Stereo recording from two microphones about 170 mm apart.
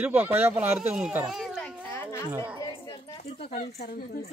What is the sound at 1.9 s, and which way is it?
Children playing, 15° left (ahead or behind).